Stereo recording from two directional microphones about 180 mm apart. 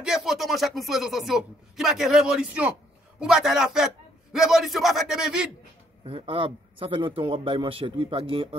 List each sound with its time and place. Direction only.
0.0 s a man's voice: 5° right (ahead or behind)
6.0 s a man's voice: 30° right (ahead or behind)